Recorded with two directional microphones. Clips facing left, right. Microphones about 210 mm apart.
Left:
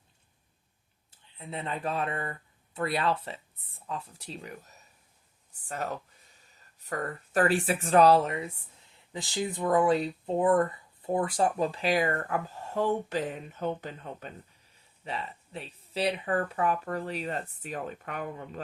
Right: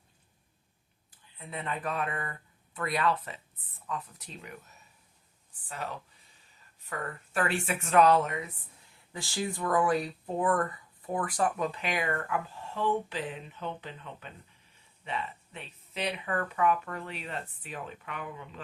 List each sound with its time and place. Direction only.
1.1 s speech: 25° left (ahead or behind)
5.6 s speech: 45° left (ahead or behind)
9.1 s speech: 20° left (ahead or behind); by 18.6 s 45° left (ahead or behind)